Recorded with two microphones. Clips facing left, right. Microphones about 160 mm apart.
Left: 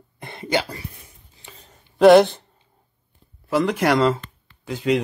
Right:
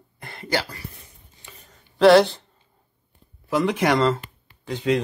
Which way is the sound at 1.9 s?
15° left (ahead or behind).